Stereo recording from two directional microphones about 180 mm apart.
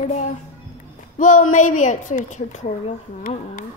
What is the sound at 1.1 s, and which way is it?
A woman's voice, 45° left (ahead or behind).